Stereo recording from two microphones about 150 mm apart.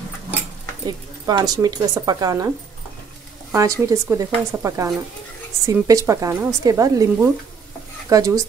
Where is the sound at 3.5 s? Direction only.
20° right (ahead or behind).